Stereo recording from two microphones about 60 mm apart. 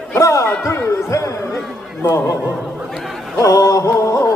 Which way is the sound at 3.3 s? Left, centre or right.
Left.